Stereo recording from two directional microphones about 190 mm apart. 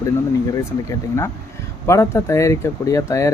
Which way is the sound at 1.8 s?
15° left (ahead or behind).